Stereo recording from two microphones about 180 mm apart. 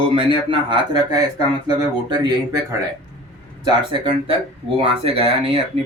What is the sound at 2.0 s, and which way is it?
Speech, 25° right (ahead or behind).